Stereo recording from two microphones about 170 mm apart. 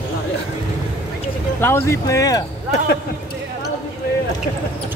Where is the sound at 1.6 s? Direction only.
15° left (ahead or behind).